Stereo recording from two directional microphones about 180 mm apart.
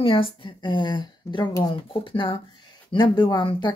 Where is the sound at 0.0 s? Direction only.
30° left (ahead or behind).